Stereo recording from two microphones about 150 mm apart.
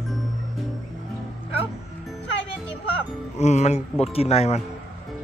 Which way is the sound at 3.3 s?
50° left (ahead or behind).